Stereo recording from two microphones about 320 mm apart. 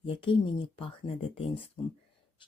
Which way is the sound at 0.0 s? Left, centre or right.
Centre.